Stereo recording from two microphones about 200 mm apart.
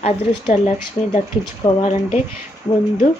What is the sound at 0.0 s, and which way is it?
Speech, 35° left (ahead or behind).